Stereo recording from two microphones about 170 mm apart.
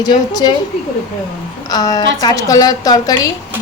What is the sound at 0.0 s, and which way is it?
Speech, 25° left (ahead or behind).